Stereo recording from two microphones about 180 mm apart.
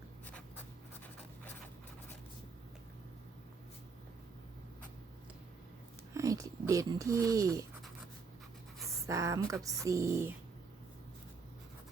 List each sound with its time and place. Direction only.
6.1 s speech: 20° right (ahead or behind)
9.0 s speech: 15° right (ahead or behind)